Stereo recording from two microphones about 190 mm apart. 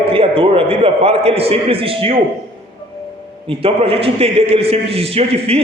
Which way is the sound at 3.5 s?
30° right (ahead or behind).